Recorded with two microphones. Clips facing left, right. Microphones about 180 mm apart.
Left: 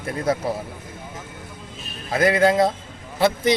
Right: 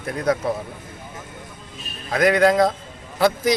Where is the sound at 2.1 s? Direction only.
25° left (ahead or behind).